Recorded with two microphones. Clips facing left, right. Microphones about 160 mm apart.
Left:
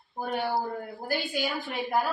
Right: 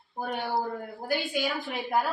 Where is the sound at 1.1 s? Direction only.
Centre (ahead or behind).